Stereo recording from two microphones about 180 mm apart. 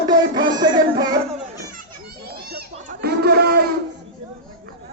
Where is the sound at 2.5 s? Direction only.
60° right (ahead or behind).